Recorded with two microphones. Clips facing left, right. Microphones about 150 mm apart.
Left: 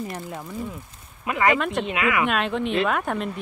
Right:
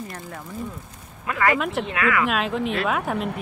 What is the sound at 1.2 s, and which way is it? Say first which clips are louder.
Speech: left 1 dB; 20° left (ahead or behind).